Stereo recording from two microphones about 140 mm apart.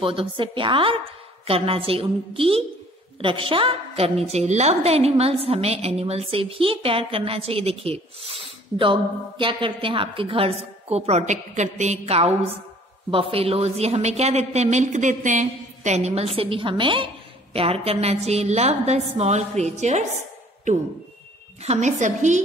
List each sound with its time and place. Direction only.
0.0 s a woman's voice: 40° right (ahead or behind)
21.6 s a woman's voice: 55° right (ahead or behind)